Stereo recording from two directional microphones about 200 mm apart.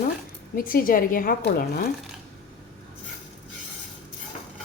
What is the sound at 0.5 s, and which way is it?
Speech, 45° left (ahead or behind).